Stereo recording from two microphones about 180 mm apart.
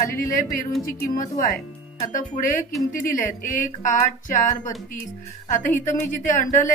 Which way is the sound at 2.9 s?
50° left (ahead or behind).